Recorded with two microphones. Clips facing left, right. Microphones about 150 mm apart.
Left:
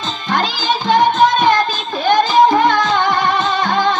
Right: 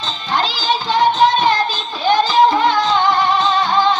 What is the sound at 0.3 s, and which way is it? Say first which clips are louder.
Music: left 1 dB; 50° left (ahead or behind).